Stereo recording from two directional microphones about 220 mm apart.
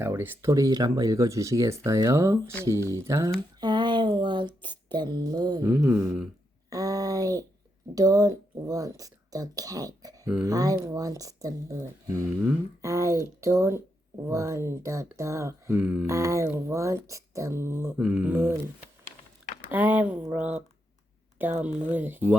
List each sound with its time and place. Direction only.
0.0 s speech: 10° right (ahead or behind)
3.6 s a sound: 20° right (ahead or behind)
4.9 s speech: 20° right (ahead or behind)
6.7 s a sound: 15° right (ahead or behind)
7.9 s speech: 15° right (ahead or behind)
19.7 s speech: 10° right (ahead or behind)